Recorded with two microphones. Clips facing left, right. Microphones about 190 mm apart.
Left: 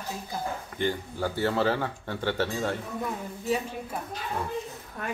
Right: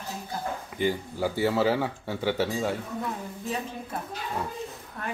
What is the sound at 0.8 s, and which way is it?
Speech, 10° right (ahead or behind).